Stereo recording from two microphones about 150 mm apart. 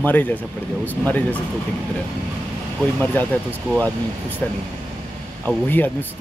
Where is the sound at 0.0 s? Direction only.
10° left (ahead or behind).